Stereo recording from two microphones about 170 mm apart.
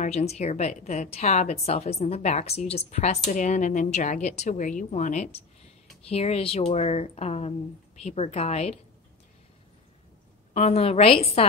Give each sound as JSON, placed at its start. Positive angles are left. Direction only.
{"t": 0.0, "sound": "a woman's voice", "side_deg": 40}
{"t": 10.5, "sound": "a woman's voice", "side_deg": 35}